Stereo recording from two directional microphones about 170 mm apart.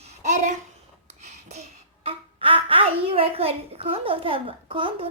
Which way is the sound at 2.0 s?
30° right (ahead or behind).